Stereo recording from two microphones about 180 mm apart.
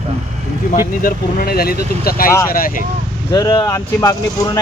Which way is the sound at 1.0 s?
55° left (ahead or behind).